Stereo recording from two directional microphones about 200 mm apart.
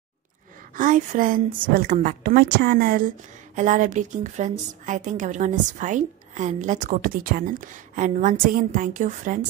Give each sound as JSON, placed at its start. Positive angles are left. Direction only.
{"t": 0.7, "sound": "a woman's voice", "side_deg": -40}